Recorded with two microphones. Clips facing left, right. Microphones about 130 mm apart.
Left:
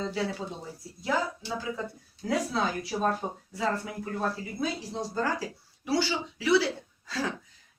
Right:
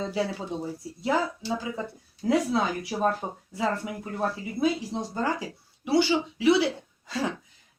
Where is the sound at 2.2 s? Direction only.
20° right (ahead or behind).